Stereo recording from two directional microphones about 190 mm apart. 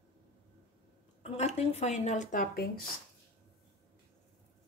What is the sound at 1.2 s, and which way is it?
Speech, 35° left (ahead or behind).